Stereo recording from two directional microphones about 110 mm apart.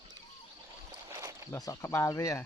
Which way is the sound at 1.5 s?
30° left (ahead or behind).